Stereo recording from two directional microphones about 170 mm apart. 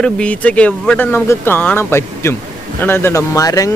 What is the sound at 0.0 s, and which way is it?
Speech, 5° left (ahead or behind).